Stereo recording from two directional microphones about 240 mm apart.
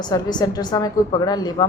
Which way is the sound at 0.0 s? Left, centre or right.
Centre.